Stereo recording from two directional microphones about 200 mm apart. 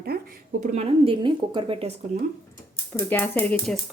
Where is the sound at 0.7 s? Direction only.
30° right (ahead or behind).